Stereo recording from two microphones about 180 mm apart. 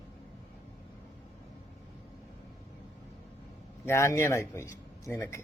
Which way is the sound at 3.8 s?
15° left (ahead or behind).